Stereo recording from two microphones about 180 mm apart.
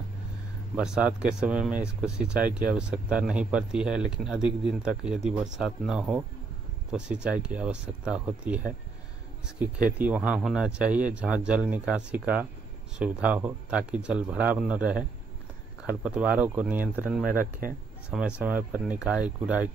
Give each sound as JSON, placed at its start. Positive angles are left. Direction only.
{"t": 0.7, "sound": "speech", "side_deg": -5}
{"t": 9.9, "sound": "speech", "side_deg": -5}
{"t": 17.3, "sound": "speech", "side_deg": -50}
{"t": 18.1, "sound": "speech", "side_deg": -5}